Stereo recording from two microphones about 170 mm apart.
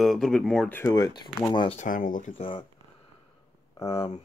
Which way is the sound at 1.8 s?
50° left (ahead or behind).